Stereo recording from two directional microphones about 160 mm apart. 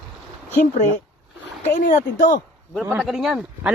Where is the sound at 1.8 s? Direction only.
55° left (ahead or behind).